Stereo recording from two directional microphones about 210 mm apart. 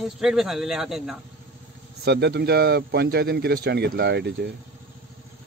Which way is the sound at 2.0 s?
50° right (ahead or behind).